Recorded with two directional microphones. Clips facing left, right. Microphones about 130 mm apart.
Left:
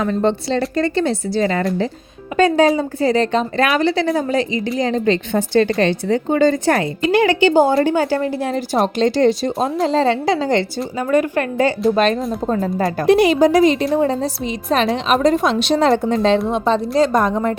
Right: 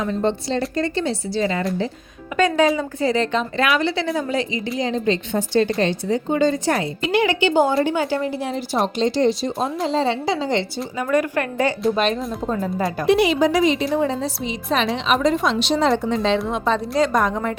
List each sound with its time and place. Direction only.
0.0 s speech: 70° left (ahead or behind)
0.8 s speech: 55° left (ahead or behind)
2.3 s a woman's voice: 30° left (ahead or behind); by 6.8 s 55° left (ahead or behind)
7.1 s a woman's voice: 40° left (ahead or behind)
10.9 s a woman's voice: 25° left (ahead or behind)
11.9 s a woman's voice: 45° left (ahead or behind)
16.5 s a woman's voice: 30° left (ahead or behind)